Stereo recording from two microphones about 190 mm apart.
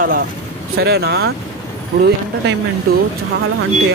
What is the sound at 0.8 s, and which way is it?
Speech, 60° right (ahead or behind).